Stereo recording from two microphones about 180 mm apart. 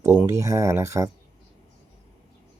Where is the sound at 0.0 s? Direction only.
15° right (ahead or behind).